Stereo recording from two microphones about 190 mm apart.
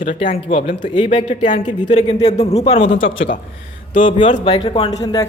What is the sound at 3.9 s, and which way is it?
Speech, 45° left (ahead or behind).